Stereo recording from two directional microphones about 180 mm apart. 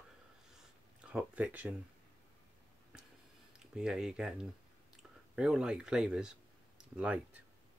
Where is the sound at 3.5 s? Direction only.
5° right (ahead or behind).